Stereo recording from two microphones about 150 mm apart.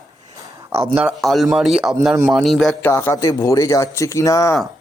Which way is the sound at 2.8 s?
15° left (ahead or behind).